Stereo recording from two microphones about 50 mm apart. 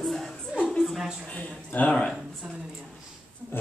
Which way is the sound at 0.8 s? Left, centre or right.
Centre.